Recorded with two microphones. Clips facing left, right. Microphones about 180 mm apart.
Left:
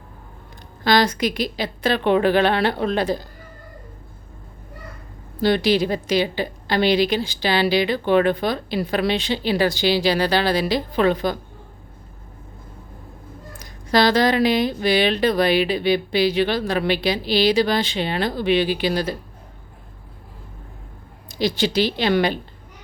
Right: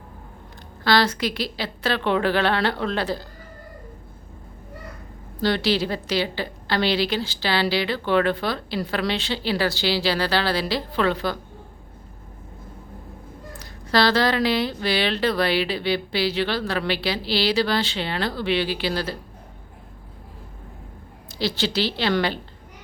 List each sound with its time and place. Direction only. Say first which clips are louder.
0.9 s a woman's voice: left 2 dB; 15° left (ahead or behind)
5.4 s a woman's voice: left 4 dB; 15° left (ahead or behind)
13.6 s a woman's voice: left 3 dB; 15° left (ahead or behind)
21.2 s a woman's voice: left 4 dB; 15° left (ahead or behind)